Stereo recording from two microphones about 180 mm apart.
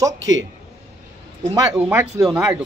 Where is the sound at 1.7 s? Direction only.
10° right (ahead or behind).